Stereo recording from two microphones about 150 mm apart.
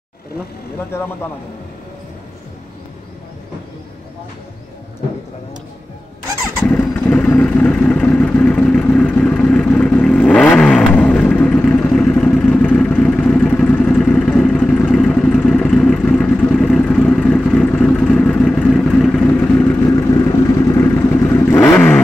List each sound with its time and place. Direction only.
6.6 s vehicle: 10° left (ahead or behind)